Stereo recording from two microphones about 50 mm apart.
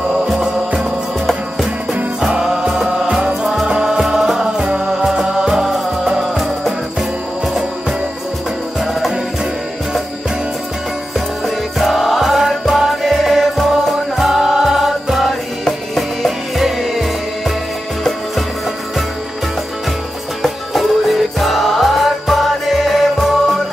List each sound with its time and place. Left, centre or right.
0.7 s music: centre
2.9 s music: centre
11.1 s music: centre
20.4 s music: centre